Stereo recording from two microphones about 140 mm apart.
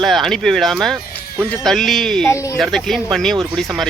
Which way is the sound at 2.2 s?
20° left (ahead or behind).